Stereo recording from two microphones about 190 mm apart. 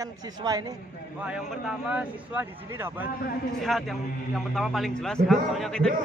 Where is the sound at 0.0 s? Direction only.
20° right (ahead or behind).